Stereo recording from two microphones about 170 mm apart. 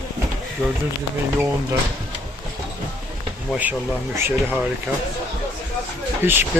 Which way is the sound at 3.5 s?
10° right (ahead or behind).